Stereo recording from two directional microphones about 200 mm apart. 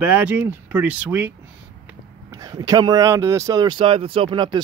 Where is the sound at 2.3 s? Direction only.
20° right (ahead or behind).